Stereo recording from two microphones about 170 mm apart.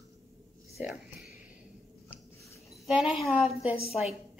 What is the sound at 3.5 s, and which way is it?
Speech, 35° left (ahead or behind).